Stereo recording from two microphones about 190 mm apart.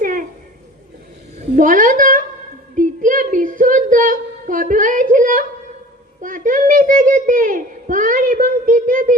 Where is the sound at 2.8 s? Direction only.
45° right (ahead or behind).